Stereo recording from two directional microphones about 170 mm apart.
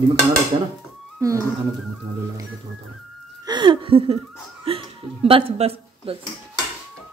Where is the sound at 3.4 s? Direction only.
25° right (ahead or behind).